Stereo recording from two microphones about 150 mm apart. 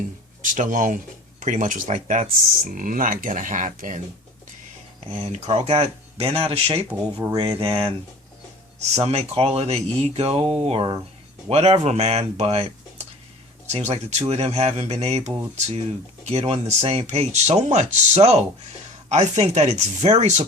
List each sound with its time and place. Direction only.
0.4 s speech: 60° right (ahead or behind)
5.1 s speech: 40° right (ahead or behind)
13.7 s speech: 45° right (ahead or behind)